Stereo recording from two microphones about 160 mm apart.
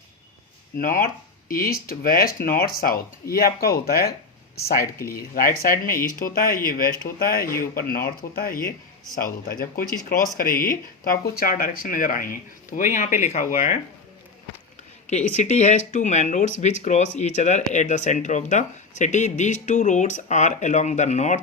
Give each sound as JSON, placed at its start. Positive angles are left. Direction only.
{"t": 0.8, "sound": "speech", "side_deg": 60}
{"t": 15.4, "sound": "speech", "side_deg": 45}